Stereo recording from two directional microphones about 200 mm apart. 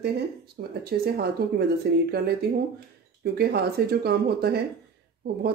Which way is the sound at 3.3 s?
55° right (ahead or behind).